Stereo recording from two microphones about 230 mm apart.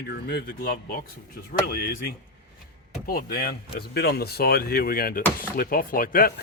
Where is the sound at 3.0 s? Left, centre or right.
Left.